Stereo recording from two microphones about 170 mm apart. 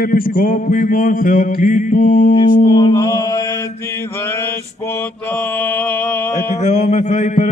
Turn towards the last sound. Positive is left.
turn(degrees=45)  # may be behind; listen again after turning